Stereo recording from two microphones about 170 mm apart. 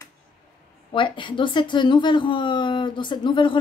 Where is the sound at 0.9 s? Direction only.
30° left (ahead or behind).